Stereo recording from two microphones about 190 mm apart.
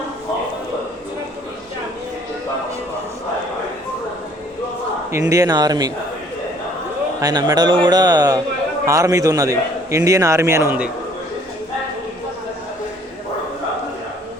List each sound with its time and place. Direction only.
5.3 s a man's voice: 20° right (ahead or behind)
7.2 s a man's voice: 20° right (ahead or behind)